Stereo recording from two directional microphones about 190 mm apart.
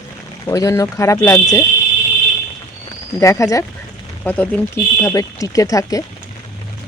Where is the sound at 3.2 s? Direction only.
15° left (ahead or behind).